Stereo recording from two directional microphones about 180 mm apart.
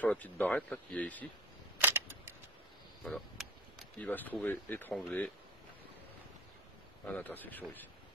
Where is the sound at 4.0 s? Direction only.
10° left (ahead or behind).